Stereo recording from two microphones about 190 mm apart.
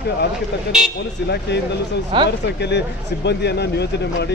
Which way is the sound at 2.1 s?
25° right (ahead or behind).